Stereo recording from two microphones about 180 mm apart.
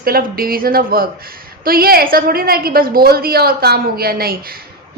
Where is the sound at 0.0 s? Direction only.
55° right (ahead or behind).